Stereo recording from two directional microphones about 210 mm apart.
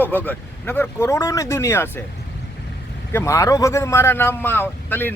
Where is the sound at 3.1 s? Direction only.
15° left (ahead or behind).